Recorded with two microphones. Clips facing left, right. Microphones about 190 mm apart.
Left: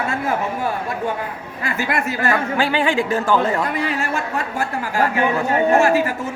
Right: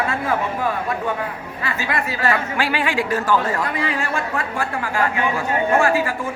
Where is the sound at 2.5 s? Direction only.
25° left (ahead or behind).